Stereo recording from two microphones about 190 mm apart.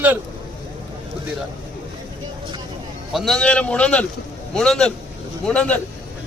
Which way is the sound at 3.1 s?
Centre (ahead or behind).